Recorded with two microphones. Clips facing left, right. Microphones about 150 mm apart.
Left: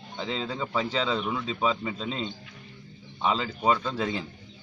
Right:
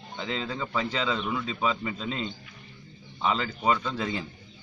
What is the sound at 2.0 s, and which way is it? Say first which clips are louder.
Speech: even; 35° left (ahead or behind).